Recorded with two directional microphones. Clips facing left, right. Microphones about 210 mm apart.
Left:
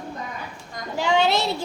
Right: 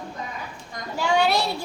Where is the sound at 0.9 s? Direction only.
20° left (ahead or behind).